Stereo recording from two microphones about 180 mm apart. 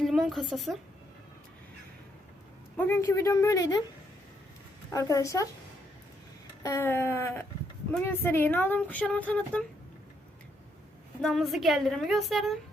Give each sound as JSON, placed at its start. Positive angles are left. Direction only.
{"t": 0.0, "sound": "a woman's voice", "side_deg": 0}
{"t": 2.7, "sound": "speech", "side_deg": 10}
{"t": 4.9, "sound": "speech", "side_deg": 20}
{"t": 6.6, "sound": "speech", "side_deg": 15}
{"t": 11.2, "sound": "a woman's voice", "side_deg": 0}